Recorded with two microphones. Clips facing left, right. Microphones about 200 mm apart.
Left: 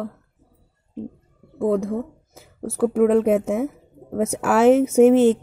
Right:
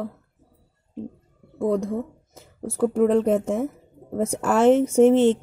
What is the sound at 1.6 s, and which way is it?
A woman's voice, centre (ahead or behind).